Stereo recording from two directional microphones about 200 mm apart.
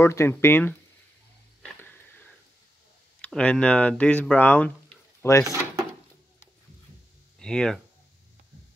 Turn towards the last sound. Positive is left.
turn(degrees=5)  # may be behind; listen again after turning